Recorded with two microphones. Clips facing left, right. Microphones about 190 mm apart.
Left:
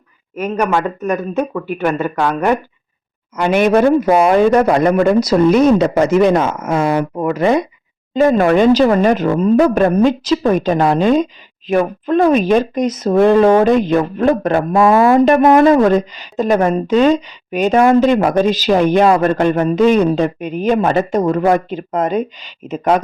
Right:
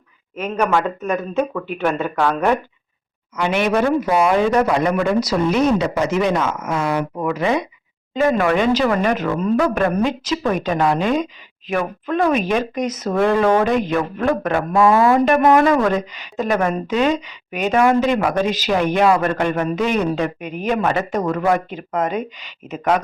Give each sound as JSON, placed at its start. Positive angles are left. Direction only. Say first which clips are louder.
{"t": 0.3, "sound": "speech", "louder": "left 2 dB", "side_deg": 10}
{"t": 3.3, "sound": "a man's voice", "louder": "left 6 dB", "side_deg": 45}
{"t": 8.1, "sound": "speech", "louder": "left 5 dB", "side_deg": 35}